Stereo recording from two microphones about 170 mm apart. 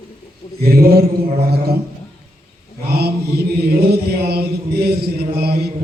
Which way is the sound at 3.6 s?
65° right (ahead or behind).